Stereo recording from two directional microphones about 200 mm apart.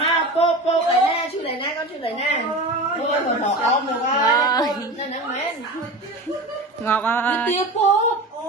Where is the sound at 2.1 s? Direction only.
35° left (ahead or behind).